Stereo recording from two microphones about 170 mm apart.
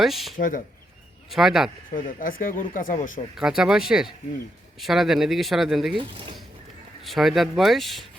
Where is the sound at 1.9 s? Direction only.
55° left (ahead or behind).